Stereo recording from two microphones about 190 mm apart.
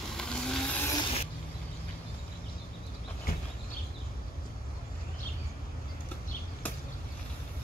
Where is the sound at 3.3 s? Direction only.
50° left (ahead or behind).